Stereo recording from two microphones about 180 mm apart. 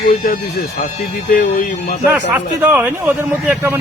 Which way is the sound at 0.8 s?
45° left (ahead or behind).